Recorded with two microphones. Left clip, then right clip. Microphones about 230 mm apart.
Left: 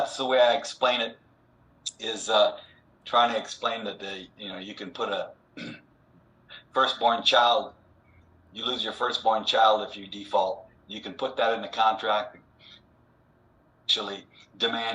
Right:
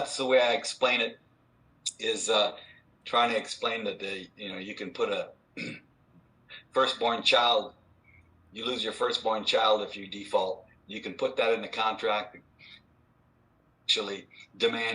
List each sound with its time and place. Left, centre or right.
0.0 s speech: right
13.8 s a man's voice: right